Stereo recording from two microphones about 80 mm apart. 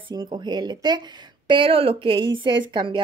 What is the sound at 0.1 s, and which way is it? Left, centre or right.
Speech, right.